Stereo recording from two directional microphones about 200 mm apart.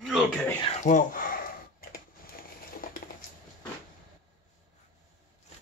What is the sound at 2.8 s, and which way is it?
Patter, 45° left (ahead or behind).